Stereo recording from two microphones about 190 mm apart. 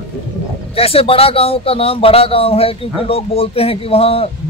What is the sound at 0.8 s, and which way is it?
Speech, 30° left (ahead or behind).